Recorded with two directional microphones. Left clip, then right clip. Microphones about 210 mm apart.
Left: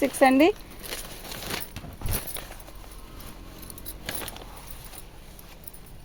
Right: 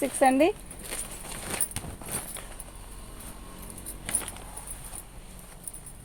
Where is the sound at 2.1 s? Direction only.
50° left (ahead or behind).